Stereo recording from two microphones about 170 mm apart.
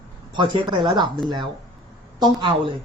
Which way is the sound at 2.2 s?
30° right (ahead or behind).